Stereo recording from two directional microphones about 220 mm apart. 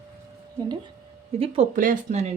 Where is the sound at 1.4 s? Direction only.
30° right (ahead or behind).